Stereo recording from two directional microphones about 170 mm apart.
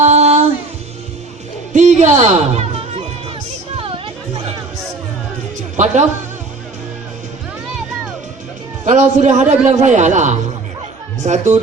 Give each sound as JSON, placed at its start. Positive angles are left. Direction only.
{"t": 0.0, "sound": "music", "side_deg": -40}
{"t": 1.7, "sound": "speech", "side_deg": -45}
{"t": 3.8, "sound": "music", "side_deg": -30}
{"t": 5.7, "sound": "speech", "side_deg": -45}
{"t": 8.8, "sound": "a man's voice", "side_deg": -45}